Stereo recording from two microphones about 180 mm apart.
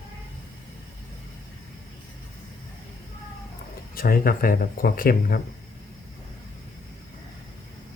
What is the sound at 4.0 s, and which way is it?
Speech, 55° left (ahead or behind).